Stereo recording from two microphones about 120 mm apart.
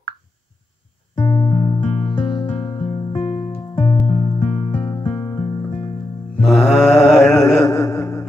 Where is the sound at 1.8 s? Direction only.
60° left (ahead or behind).